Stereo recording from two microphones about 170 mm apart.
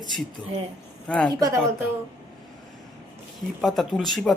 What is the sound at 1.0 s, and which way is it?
Speech, 5° left (ahead or behind).